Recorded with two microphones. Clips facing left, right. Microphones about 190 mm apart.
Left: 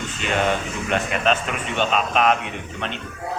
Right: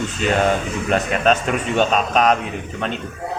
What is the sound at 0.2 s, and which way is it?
Speech, 40° right (ahead or behind).